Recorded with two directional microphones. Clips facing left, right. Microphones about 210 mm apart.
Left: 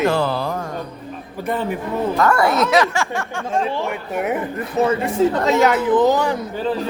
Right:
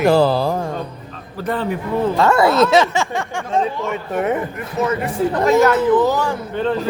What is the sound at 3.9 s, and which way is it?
Speech, 5° left (ahead or behind).